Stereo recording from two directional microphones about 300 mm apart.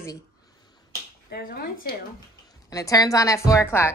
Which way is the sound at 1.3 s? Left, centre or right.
Left.